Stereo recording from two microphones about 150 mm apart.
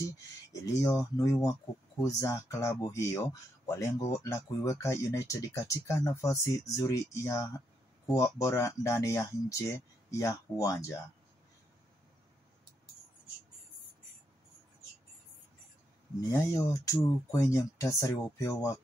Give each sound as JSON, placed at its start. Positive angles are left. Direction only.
{"t": 0.5, "sound": "speech", "side_deg": 20}
{"t": 16.2, "sound": "speech", "side_deg": 20}